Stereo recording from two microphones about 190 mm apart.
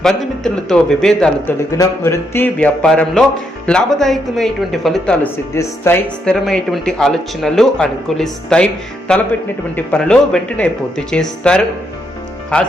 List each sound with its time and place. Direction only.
0.0 s speech: centre (ahead or behind)
5.5 s speech: 15° left (ahead or behind)
6.2 s speech: 5° left (ahead or behind)